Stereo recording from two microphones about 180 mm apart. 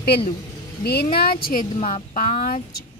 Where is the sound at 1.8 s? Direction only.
35° left (ahead or behind).